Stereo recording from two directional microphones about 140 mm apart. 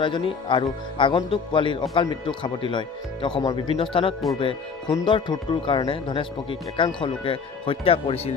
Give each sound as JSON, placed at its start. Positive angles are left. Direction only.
{"t": 0.0, "sound": "speech", "side_deg": 35}